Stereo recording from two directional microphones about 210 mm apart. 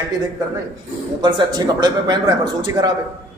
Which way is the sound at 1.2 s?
20° right (ahead or behind).